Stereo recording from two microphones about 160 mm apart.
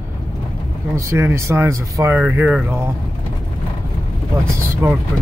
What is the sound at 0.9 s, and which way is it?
Speech, 15° right (ahead or behind).